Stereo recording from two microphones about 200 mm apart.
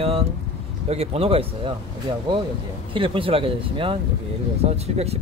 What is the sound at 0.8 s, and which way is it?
Speech, 30° right (ahead or behind).